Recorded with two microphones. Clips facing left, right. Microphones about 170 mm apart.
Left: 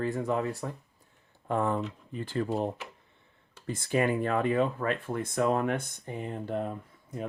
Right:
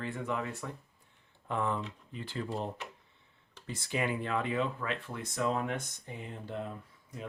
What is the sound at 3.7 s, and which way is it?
Speech, 50° left (ahead or behind).